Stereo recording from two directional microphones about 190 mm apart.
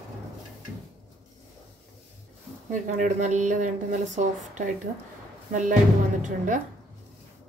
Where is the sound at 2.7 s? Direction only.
40° right (ahead or behind).